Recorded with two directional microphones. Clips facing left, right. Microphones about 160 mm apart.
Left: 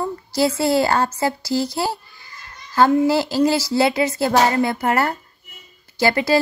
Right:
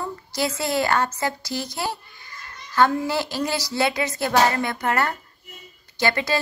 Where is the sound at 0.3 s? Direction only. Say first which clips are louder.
Left 7 dB; 30° left (ahead or behind).